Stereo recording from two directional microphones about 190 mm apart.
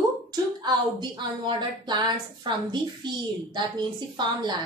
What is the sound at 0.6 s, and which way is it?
A woman's voice, 25° right (ahead or behind).